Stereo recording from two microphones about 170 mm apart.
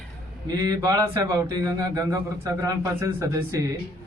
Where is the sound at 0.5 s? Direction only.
20° right (ahead or behind).